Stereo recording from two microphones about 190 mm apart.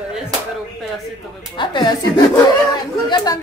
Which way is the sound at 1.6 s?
25° left (ahead or behind).